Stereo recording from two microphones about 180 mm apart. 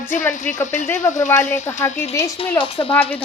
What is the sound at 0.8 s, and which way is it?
A woman's voice, 10° left (ahead or behind).